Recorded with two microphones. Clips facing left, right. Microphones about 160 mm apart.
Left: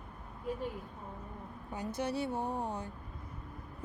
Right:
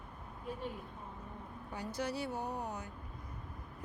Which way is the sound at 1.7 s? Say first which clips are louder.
Left 3 dB; 20° left (ahead or behind).